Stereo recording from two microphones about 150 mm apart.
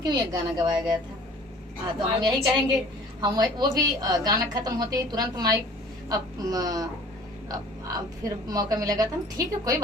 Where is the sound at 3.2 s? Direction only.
30° right (ahead or behind).